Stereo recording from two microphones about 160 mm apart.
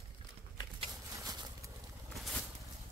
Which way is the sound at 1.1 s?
25° right (ahead or behind).